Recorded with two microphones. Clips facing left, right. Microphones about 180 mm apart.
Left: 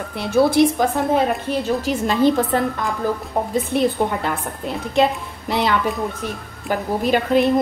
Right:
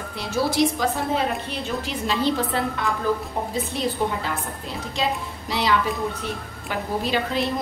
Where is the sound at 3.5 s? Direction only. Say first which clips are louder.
Left 7 dB; 60° left (ahead or behind).